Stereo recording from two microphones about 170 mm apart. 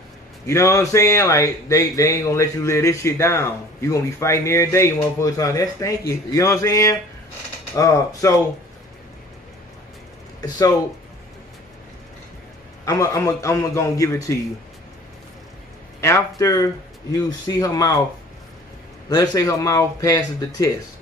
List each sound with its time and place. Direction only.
0.5 s a man's voice: 15° left (ahead or behind)
12.8 s speech: 20° left (ahead or behind)
16.0 s a man's voice: 20° left (ahead or behind)
19.0 s a man's voice: 20° left (ahead or behind)